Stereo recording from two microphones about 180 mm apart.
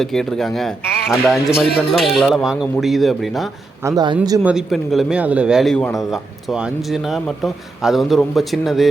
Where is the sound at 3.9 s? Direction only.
20° right (ahead or behind).